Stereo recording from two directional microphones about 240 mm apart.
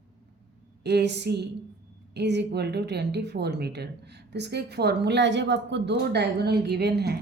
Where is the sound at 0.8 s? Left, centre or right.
Right.